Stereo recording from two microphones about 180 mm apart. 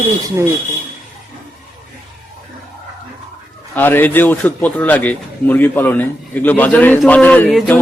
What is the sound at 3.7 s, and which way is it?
A man's voice, 10° left (ahead or behind).